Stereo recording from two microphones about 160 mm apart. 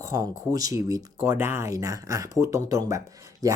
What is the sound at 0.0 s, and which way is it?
Speech, 20° right (ahead or behind).